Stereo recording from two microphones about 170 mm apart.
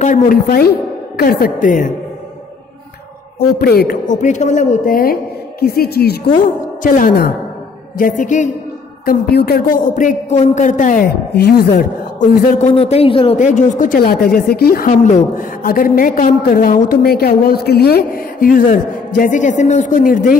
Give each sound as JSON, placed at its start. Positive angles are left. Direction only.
{"t": 0.0, "sound": "a woman's voice", "side_deg": 50}
{"t": 3.3, "sound": "a man's voice", "side_deg": 70}
{"t": 4.2, "sound": "a woman's voice", "side_deg": 45}
{"t": 9.0, "sound": "a woman's voice", "side_deg": 65}
{"t": 12.5, "sound": "a man's voice", "side_deg": 40}
{"t": 13.4, "sound": "a woman's voice", "side_deg": 45}